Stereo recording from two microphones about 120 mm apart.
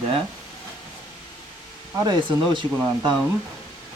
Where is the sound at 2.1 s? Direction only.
40° right (ahead or behind).